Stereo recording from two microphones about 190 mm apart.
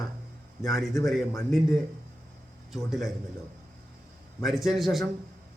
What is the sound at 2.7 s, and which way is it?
Speech, centre (ahead or behind).